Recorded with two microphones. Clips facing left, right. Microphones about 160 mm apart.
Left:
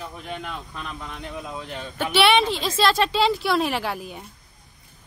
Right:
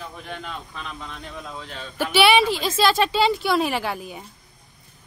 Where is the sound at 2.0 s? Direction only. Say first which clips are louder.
Right 1 dB; 5° right (ahead or behind).